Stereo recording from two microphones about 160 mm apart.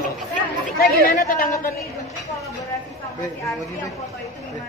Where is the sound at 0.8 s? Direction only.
60° left (ahead or behind).